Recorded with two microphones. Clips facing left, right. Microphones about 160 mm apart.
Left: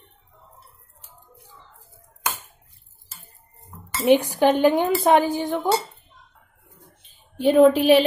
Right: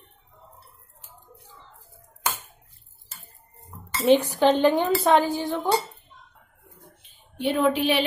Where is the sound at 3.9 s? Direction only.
15° left (ahead or behind).